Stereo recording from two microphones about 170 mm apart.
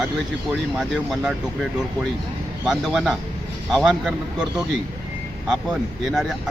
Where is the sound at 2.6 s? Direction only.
Centre (ahead or behind).